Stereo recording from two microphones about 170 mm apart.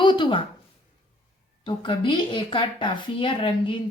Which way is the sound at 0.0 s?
30° left (ahead or behind).